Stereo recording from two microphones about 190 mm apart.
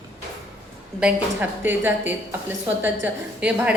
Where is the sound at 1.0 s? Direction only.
10° right (ahead or behind).